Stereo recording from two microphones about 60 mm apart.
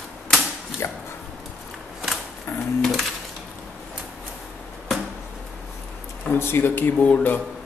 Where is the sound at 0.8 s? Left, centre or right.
Left.